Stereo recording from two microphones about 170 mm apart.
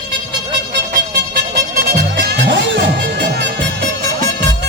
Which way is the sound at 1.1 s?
60° right (ahead or behind).